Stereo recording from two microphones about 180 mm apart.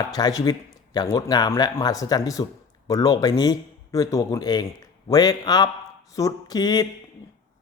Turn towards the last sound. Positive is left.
turn(degrees=20)  # may be behind; listen again after turning